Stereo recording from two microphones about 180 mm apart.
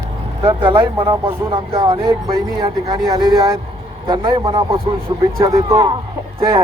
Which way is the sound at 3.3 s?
20° right (ahead or behind).